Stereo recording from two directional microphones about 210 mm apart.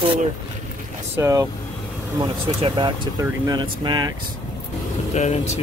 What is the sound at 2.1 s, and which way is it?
Speech, 25° right (ahead or behind).